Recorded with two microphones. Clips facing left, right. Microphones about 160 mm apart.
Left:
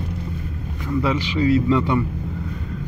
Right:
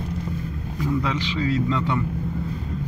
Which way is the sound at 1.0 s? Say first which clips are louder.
Left 5 dB; 10° left (ahead or behind).